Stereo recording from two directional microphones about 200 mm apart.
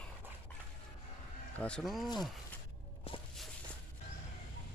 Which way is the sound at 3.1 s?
30° left (ahead or behind).